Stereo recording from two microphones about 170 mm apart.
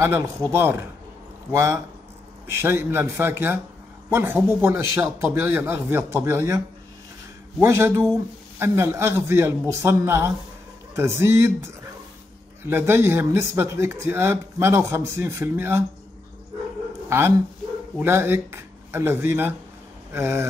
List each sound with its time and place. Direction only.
0.0 s speech: 15° right (ahead or behind)
7.6 s speech: 15° right (ahead or behind)
17.1 s speech: 15° right (ahead or behind)